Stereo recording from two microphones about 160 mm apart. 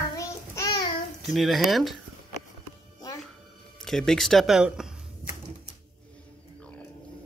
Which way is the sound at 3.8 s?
5° left (ahead or behind).